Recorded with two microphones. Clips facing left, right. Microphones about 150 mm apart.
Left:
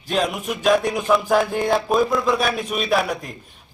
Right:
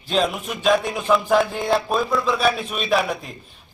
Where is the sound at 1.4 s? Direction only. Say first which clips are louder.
Left 1 dB; centre (ahead or behind).